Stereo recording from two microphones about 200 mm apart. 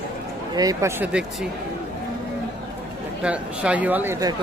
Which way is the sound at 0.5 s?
15° right (ahead or behind).